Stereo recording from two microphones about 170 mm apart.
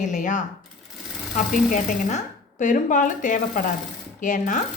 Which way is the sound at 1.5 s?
50° left (ahead or behind).